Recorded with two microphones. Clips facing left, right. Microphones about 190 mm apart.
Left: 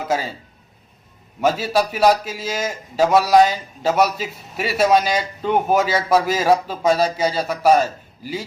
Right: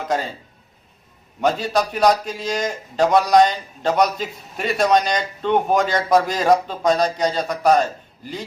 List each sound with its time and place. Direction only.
1.4 s a man's voice: 5° left (ahead or behind)